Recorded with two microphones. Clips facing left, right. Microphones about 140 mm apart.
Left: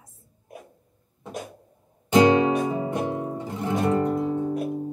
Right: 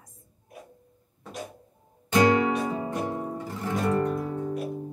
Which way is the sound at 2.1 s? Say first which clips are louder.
Left 4 dB; 20° left (ahead or behind).